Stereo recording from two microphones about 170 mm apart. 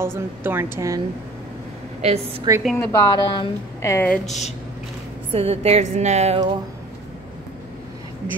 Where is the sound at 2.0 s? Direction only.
35° right (ahead or behind).